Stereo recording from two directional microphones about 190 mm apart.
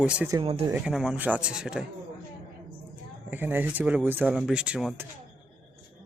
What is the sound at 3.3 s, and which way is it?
Speech, 10° right (ahead or behind).